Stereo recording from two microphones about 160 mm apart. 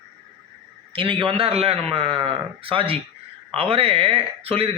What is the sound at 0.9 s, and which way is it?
Speech, 30° right (ahead or behind).